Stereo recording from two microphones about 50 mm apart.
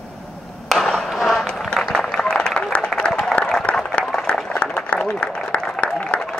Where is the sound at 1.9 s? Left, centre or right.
Centre.